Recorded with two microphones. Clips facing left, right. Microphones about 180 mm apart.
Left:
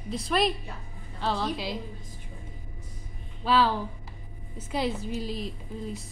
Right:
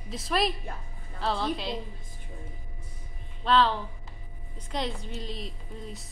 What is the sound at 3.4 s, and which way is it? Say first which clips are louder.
A woman's voice: even; 5° left (ahead or behind).